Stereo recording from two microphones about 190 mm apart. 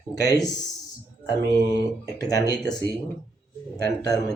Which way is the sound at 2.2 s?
20° left (ahead or behind).